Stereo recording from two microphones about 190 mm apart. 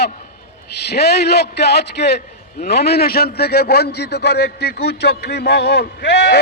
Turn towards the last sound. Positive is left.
turn(degrees=60)  # may be behind; listen again after turning